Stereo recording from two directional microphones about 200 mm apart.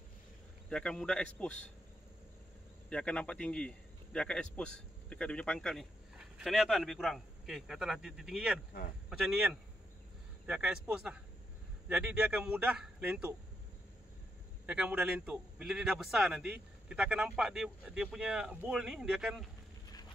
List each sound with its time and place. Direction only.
0.7 s a man's voice: 5° left (ahead or behind)
2.9 s a man's voice: 5° left (ahead or behind)
14.7 s a man's voice: 5° right (ahead or behind)